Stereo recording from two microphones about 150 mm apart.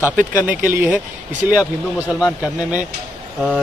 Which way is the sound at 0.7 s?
10° right (ahead or behind).